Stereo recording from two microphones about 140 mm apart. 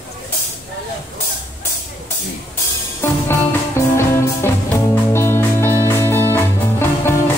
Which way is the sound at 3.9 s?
20° left (ahead or behind).